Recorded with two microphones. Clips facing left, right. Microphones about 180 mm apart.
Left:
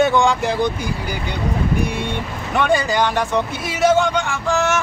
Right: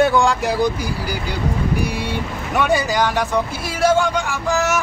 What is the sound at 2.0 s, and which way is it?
Speech, 5° right (ahead or behind).